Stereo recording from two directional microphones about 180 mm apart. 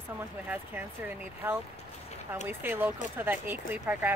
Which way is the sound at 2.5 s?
10° right (ahead or behind).